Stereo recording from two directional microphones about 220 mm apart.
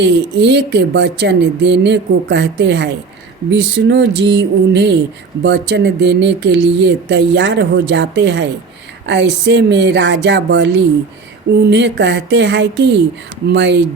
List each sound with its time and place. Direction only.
0.0 s speech: 50° right (ahead or behind)